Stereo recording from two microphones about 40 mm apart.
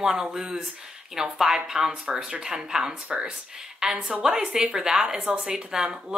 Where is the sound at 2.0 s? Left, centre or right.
Right.